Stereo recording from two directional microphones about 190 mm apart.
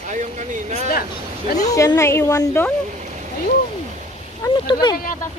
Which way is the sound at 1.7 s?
15° left (ahead or behind).